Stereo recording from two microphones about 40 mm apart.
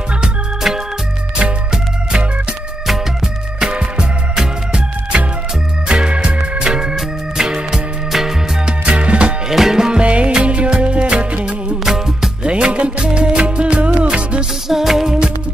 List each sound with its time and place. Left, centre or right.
0.7 s music: centre
3.5 s music: right
6.7 s organ: centre
7.3 s music: centre
8.6 s music: right
9.5 s music: centre
10.0 s music: right
11.8 s music: centre
12.4 s music: right
14.7 s music: centre